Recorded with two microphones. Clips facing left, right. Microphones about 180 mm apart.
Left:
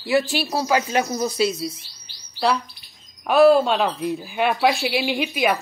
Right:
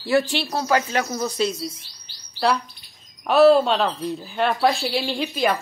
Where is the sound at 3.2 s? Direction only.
Centre (ahead or behind).